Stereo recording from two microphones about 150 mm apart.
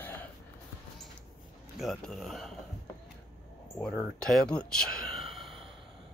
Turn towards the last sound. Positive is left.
turn(degrees=0)  # may be behind; listen again after turning